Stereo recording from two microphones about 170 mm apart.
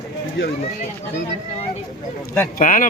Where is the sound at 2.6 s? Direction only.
50° left (ahead or behind).